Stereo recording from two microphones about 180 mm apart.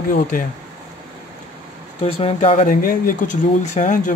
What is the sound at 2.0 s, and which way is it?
Speech, 35° left (ahead or behind).